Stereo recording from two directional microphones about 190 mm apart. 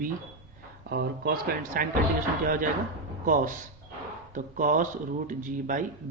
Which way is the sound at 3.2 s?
45° right (ahead or behind).